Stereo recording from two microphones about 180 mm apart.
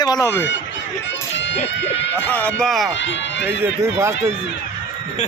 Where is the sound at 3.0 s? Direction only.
85° left.